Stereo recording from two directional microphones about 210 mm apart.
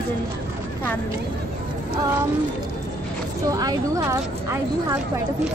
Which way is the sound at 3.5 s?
15° right (ahead or behind).